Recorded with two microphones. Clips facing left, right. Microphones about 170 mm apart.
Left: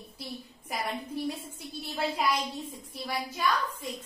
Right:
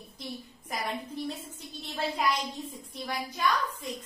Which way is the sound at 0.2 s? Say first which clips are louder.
Right 1 dB; 5° left (ahead or behind).